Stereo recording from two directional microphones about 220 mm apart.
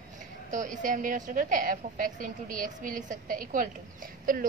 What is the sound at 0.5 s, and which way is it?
A woman's voice, 35° right (ahead or behind).